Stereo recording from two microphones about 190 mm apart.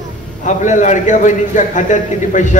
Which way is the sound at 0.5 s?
40° left (ahead or behind).